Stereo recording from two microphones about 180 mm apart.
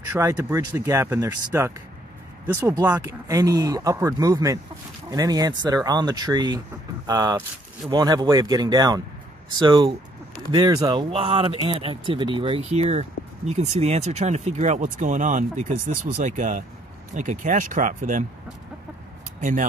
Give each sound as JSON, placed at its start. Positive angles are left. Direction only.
{"t": 0.1, "sound": "speech", "side_deg": -15}